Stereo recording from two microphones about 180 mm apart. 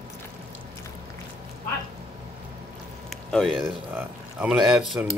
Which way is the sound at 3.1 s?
5° left (ahead or behind).